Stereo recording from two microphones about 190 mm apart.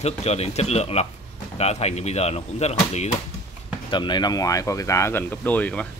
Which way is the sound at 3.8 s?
25° left (ahead or behind).